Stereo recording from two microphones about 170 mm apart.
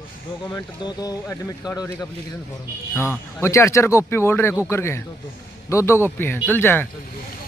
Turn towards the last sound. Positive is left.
turn(degrees=10)  # may be behind; listen again after turning